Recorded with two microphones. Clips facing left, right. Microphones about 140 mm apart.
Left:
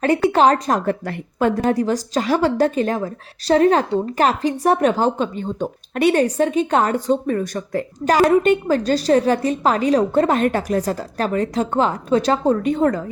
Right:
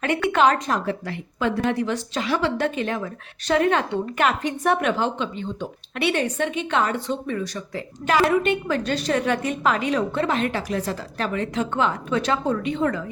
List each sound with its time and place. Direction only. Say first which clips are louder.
0.0 s a woman's voice: left 4 dB; 35° left (ahead or behind)